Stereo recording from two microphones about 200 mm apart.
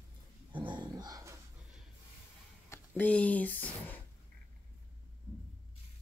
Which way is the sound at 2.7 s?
10° left (ahead or behind).